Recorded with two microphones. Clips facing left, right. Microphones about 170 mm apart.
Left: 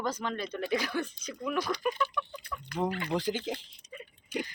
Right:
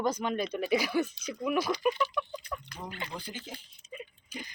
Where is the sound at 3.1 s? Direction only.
85° left.